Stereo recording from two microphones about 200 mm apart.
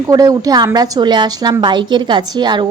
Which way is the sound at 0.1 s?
20° right (ahead or behind).